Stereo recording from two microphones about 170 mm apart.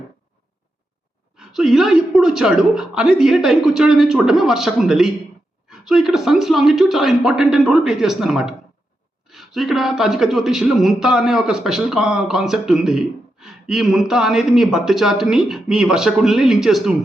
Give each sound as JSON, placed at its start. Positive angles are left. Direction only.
{"t": 1.4, "sound": "speech", "side_deg": 0}